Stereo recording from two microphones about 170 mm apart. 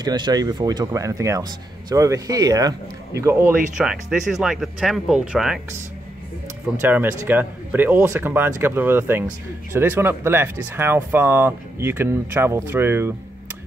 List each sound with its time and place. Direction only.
0.0 s speech: 25° right (ahead or behind)
3.7 s speech: 5° right (ahead or behind)
6.8 s speech: 15° right (ahead or behind)